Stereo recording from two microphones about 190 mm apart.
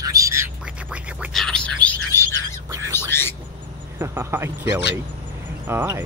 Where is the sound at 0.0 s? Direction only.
15° right (ahead or behind).